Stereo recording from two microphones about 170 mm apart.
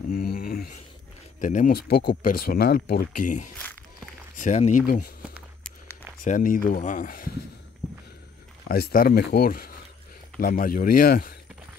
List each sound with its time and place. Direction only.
0.1 s a sound: 60° left (ahead or behind)
1.4 s speech: 50° left (ahead or behind)
6.2 s speech: 50° left (ahead or behind)
8.6 s speech: 60° left (ahead or behind)